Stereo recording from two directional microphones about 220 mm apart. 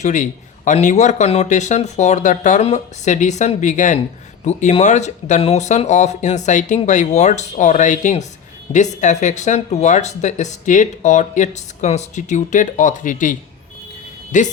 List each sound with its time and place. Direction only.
0.0 s speech: 35° left (ahead or behind)
14.3 s speech: 35° left (ahead or behind)